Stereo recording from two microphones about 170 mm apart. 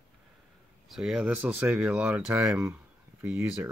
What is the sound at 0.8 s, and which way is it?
Speech, 5° right (ahead or behind).